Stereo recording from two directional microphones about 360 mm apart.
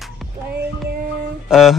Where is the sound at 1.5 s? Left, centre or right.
Centre.